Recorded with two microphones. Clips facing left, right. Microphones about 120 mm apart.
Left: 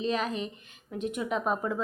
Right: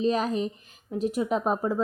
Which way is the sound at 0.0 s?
35° right (ahead or behind).